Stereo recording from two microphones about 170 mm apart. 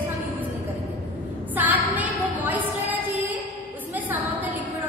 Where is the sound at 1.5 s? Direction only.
10° right (ahead or behind).